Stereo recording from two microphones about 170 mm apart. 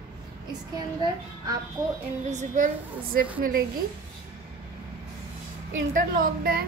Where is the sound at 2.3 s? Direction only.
50° right (ahead or behind).